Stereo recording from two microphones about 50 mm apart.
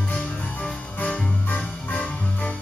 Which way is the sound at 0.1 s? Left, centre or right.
Left.